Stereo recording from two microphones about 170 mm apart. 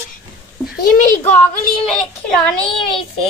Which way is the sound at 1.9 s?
5° left (ahead or behind).